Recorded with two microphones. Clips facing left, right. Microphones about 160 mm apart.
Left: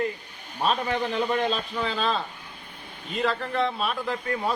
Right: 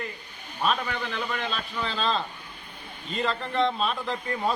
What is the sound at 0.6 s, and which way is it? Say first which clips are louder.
Speech: left 3 dB; 35° left (ahead or behind).